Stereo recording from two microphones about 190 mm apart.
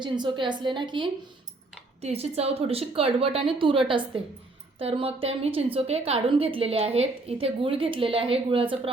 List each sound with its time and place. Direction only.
0.0 s a woman's voice: 25° right (ahead or behind)